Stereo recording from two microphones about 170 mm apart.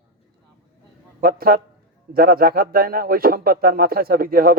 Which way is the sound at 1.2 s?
60° right (ahead or behind).